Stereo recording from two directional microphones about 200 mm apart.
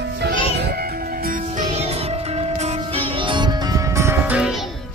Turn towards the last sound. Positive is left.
turn(degrees=-5)  # may be behind; listen again after turning